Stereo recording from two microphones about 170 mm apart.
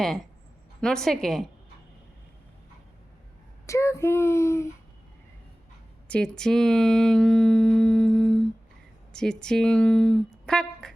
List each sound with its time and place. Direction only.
0.8 s a woman's voice: 5° left (ahead or behind)
3.7 s speech: 15° left (ahead or behind)
6.1 s speech: 5° left (ahead or behind)